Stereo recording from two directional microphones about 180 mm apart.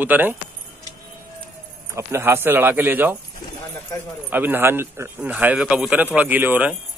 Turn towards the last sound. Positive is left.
turn(degrees=-10)  # may be behind; listen again after turning